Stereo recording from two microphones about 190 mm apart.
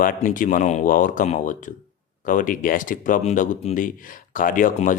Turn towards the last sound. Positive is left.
turn(degrees=45)  # may be behind; listen again after turning